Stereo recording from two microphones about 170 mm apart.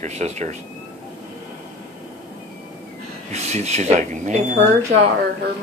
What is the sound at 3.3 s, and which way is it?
Speech, 40° right (ahead or behind).